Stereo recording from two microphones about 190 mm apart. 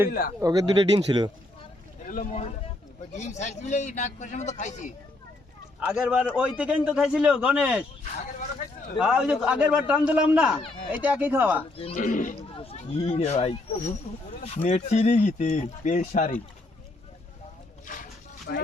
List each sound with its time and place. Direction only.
0.1 s speech: 50° left (ahead or behind)
0.3 s speech: 20° right (ahead or behind)
2.0 s speech: 40° left (ahead or behind)
5.9 s a man's voice: 5° right (ahead or behind)
9.0 s a man's voice: 5° right (ahead or behind)
11.9 s speech: 45° left (ahead or behind)
12.4 s speech: 30° left (ahead or behind)